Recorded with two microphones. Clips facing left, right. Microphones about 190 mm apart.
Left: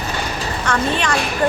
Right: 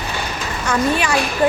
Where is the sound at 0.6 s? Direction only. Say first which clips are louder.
Right 2 dB; 10° right (ahead or behind).